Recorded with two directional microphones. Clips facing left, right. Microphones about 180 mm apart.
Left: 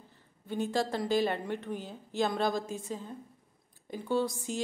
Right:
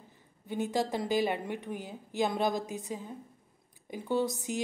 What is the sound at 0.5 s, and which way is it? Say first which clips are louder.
A woman's voice: even; 15° right (ahead or behind).